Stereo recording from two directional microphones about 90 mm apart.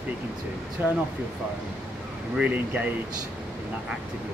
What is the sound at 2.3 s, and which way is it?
Speech, 15° right (ahead or behind).